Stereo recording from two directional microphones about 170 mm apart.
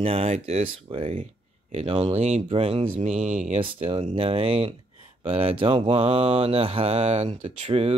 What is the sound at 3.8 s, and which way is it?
Speech, 30° right (ahead or behind).